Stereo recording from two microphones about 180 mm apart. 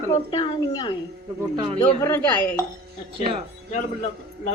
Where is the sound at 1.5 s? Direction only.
25° right (ahead or behind).